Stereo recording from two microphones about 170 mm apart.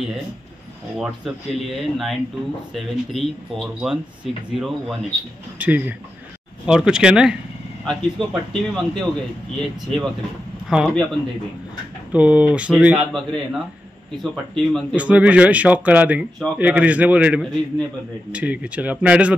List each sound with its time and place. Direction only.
0.9 s a man's voice: 5° right (ahead or behind)
12.1 s a man's voice: 10° right (ahead or behind)